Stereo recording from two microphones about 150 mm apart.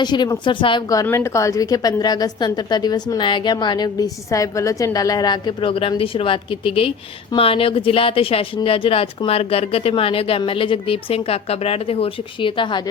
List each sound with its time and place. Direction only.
0.0 s a woman's voice: 30° left (ahead or behind)